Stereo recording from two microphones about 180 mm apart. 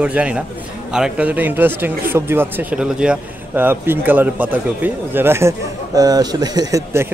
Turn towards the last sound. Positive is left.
turn(degrees=-15)  # may be behind; listen again after turning